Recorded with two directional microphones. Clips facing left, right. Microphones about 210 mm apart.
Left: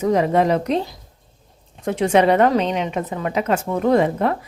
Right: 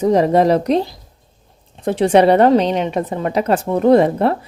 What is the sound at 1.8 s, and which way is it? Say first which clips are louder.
A woman's voice: right 4 dB; 35° right (ahead or behind).